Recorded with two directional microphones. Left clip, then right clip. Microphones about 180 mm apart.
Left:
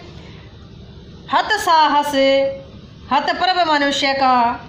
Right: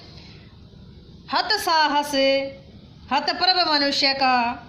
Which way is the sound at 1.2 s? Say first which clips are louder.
Left 6 dB; 20° right (ahead or behind).